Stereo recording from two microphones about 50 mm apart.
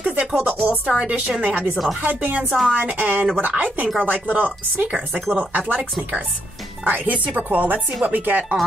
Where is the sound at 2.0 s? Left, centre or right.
Right.